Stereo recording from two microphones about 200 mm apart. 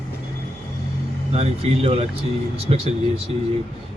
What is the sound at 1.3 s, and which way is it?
A man's voice, 30° right (ahead or behind).